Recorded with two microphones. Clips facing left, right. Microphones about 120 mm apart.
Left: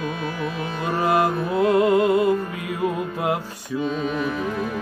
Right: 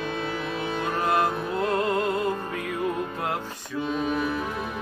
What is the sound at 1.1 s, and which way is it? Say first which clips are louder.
Music: left 5 dB; 10° left (ahead or behind).